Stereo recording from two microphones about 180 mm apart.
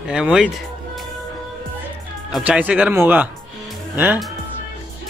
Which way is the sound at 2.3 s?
5° right (ahead or behind).